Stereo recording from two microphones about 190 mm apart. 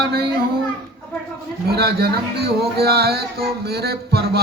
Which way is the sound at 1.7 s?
55° right (ahead or behind).